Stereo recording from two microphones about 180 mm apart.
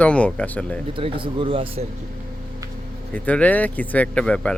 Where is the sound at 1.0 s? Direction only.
30° right (ahead or behind).